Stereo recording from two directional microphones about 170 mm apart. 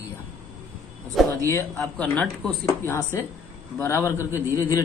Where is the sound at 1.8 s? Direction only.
5° left (ahead or behind).